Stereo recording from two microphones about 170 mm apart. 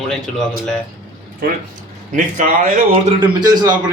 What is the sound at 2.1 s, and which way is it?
Speech, 50° right (ahead or behind).